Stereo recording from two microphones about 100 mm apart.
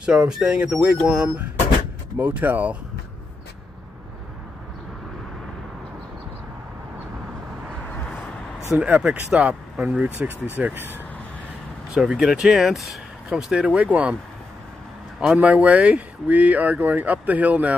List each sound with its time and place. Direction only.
0.0 s speech: 10° right (ahead or behind)
8.7 s speech: 15° right (ahead or behind)
11.9 s speech: 5° right (ahead or behind)
15.1 s speech: 5° right (ahead or behind)